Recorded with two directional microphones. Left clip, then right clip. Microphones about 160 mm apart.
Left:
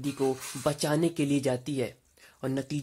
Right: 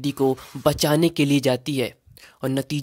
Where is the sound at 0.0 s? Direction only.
40° right (ahead or behind).